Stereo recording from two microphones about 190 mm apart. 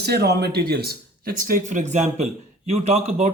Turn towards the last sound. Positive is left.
turn(degrees=-35)  # may be behind; listen again after turning